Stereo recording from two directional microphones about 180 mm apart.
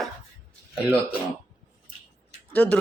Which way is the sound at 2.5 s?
10° left (ahead or behind).